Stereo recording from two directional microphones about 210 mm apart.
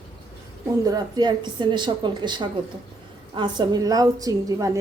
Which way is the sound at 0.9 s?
20° right (ahead or behind).